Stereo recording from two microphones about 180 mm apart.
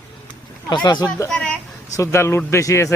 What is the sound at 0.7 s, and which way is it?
Speech, 25° left (ahead or behind).